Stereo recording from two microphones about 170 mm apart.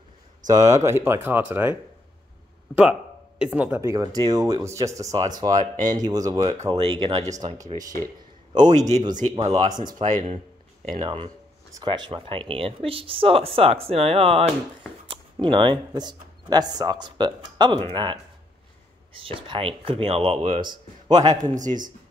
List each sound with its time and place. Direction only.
0.5 s speech: 20° right (ahead or behind)
8.7 s a man's voice: 45° right (ahead or behind)
9.6 s speech: 25° right (ahead or behind)
19.2 s speech: 30° right (ahead or behind)
21.3 s a man's voice: 45° right (ahead or behind)